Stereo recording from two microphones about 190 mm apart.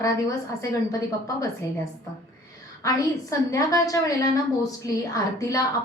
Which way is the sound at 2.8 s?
20° left (ahead or behind).